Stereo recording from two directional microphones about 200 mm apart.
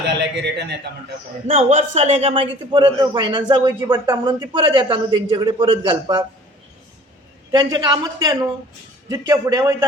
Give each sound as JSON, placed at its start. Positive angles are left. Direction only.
{"t": 0.0, "sound": "music", "side_deg": -60}
{"t": 1.5, "sound": "a man's voice", "side_deg": -30}
{"t": 7.5, "sound": "a man's voice", "side_deg": -20}